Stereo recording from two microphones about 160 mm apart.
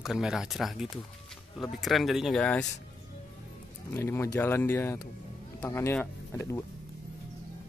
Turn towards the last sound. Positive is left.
turn(degrees=10)  # may be behind; listen again after turning